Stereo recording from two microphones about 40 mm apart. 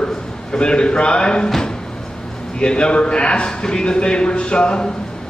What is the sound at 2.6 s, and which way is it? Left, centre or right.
A man's voice, left.